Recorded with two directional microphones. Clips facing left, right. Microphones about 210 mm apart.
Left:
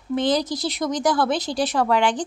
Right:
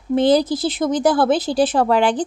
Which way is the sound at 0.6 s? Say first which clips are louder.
Right 5 dB; 30° right (ahead or behind).